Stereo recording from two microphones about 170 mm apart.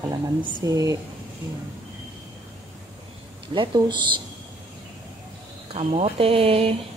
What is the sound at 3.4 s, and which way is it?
Speech, 30° right (ahead or behind).